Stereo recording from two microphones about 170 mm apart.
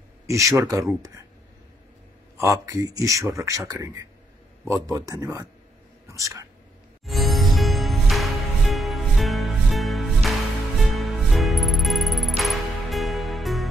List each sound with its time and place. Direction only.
0.3 s speech: 20° right (ahead or behind)
2.3 s speech: 20° right (ahead or behind)
7.1 s music: centre (ahead or behind)